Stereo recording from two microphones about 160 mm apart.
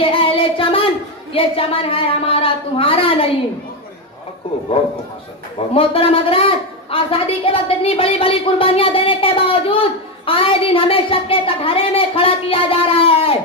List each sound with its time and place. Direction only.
0.0 s a sound: 35° left (ahead or behind)
1.3 s a woman's voice: 35° left (ahead or behind)
5.8 s a woman's voice: 35° left (ahead or behind)